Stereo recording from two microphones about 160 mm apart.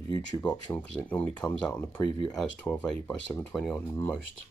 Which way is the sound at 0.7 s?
10° left (ahead or behind).